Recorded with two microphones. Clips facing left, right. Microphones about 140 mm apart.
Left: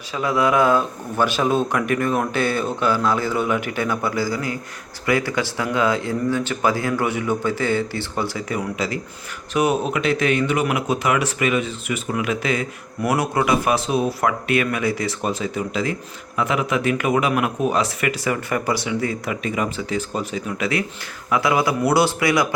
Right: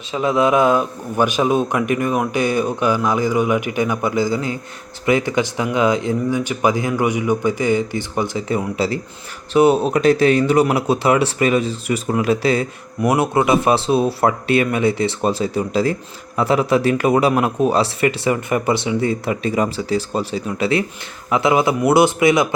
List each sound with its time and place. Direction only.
0.1 s a man's voice: 20° right (ahead or behind)